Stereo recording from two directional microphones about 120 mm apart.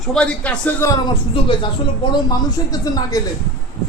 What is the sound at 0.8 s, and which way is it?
Speech, 20° left (ahead or behind).